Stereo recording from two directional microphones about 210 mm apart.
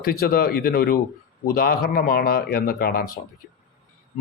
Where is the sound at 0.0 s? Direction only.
45° left (ahead or behind).